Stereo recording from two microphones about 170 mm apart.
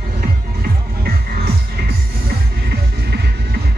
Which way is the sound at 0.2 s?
65° right (ahead or behind).